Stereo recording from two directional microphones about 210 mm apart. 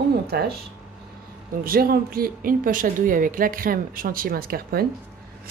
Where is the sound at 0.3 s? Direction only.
50° right (ahead or behind).